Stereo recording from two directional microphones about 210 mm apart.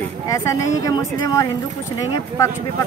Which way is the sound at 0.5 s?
20° left (ahead or behind).